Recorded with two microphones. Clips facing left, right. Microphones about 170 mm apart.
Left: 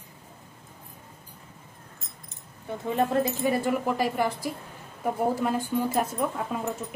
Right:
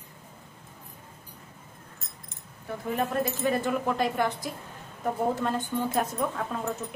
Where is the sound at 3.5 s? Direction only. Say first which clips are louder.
Left 1 dB; 10° left (ahead or behind).